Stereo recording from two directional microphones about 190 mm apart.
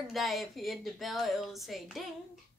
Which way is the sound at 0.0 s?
Centre (ahead or behind).